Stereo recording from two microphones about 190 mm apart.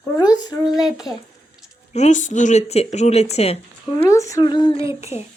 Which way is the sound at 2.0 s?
40° left (ahead or behind).